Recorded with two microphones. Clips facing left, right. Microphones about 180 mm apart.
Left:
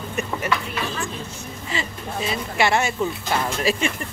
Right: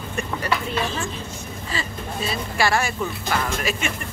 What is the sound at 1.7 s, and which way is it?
Speech, 20° left (ahead or behind).